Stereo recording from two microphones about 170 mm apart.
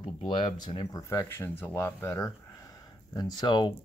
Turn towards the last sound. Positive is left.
turn(degrees=25)  # may be behind; listen again after turning